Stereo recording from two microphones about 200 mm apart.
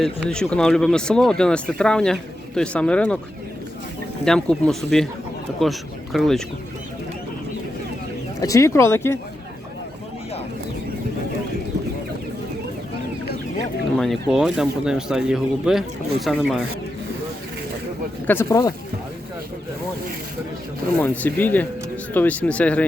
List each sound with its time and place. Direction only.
0.0 s speech: 5° left (ahead or behind)
4.3 s speech: 5° left (ahead or behind)
6.1 s speech: centre (ahead or behind)
8.4 s speech: 15° left (ahead or behind)
13.9 s speech: centre (ahead or behind)
18.3 s speech: 15° left (ahead or behind)
21.0 s speech: 10° left (ahead or behind)